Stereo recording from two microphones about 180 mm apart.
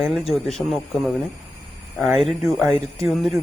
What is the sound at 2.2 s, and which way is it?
Speech, centre (ahead or behind).